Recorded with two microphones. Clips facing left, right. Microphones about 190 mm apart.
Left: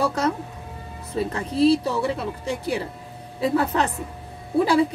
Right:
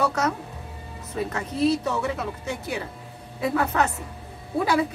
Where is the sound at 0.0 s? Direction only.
30° left (ahead or behind).